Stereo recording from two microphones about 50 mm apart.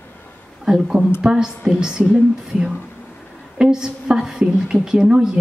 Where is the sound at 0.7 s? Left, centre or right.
Centre.